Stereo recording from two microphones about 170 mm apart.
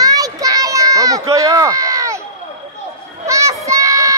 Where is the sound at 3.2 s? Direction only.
20° right (ahead or behind).